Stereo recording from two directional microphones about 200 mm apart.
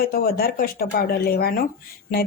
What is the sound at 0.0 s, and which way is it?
Speech, 50° left (ahead or behind).